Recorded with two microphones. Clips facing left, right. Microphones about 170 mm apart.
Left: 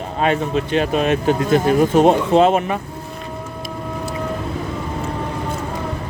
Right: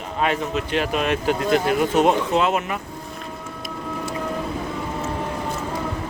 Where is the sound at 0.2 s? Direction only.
30° left (ahead or behind).